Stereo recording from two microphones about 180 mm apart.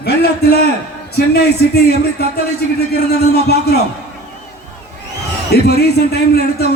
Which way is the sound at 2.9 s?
60° left (ahead or behind).